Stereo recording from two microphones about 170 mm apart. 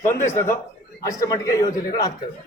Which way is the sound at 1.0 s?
20° left (ahead or behind).